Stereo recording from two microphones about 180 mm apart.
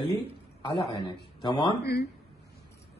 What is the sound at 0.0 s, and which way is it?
Speech, 20° left (ahead or behind).